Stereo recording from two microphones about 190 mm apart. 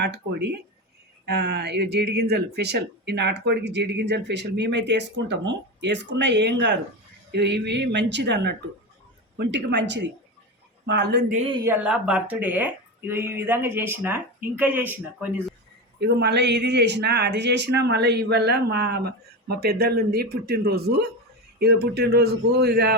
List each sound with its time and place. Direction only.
0.0 s a woman's voice: 65° right (ahead or behind)
11.3 s speech: 40° right (ahead or behind)
11.6 s speech: 10° right (ahead or behind)
16.0 s speech: 60° right (ahead or behind)